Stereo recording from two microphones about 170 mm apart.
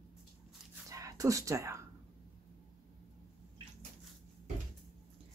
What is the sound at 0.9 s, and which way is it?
Speech, 20° right (ahead or behind).